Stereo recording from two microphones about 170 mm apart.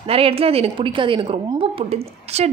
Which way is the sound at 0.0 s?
35° right (ahead or behind).